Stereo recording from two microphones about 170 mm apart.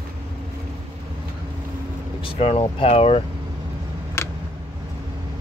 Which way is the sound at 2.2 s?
35° left (ahead or behind).